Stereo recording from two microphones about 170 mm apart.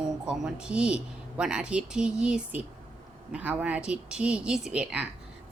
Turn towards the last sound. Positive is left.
turn(degrees=-5)  # may be behind; listen again after turning